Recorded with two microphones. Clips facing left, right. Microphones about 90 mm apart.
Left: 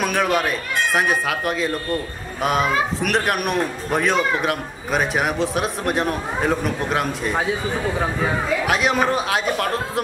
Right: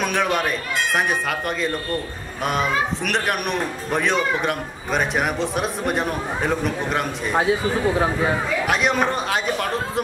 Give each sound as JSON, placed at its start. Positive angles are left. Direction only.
{"t": 0.0, "sound": "a man's voice", "side_deg": 5}